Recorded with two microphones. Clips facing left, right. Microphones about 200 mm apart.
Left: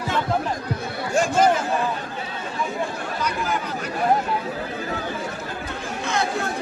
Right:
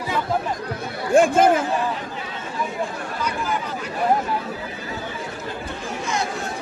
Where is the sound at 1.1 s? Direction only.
55° right (ahead or behind).